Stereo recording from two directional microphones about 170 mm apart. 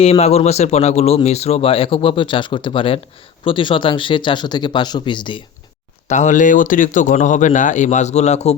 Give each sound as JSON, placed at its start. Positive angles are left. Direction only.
{"t": 0.0, "sound": "speech", "side_deg": 35}
{"t": 6.1, "sound": "speech", "side_deg": 45}